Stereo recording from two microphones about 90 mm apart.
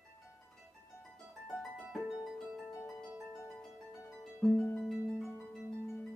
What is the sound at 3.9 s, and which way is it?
Music, 30° left (ahead or behind).